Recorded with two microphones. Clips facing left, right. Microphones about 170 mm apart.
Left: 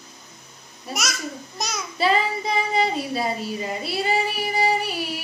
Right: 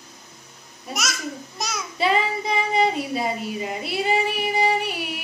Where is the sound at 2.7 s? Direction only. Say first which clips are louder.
Right 1 dB; 20° right (ahead or behind).